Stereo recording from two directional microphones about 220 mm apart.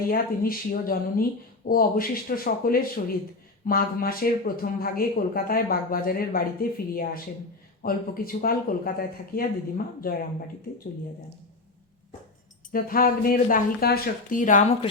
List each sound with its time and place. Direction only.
0.1 s speech: 40° left (ahead or behind)
12.7 s speech: 40° left (ahead or behind)